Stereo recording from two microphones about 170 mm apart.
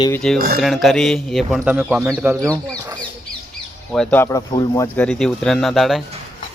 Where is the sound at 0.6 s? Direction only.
Centre (ahead or behind).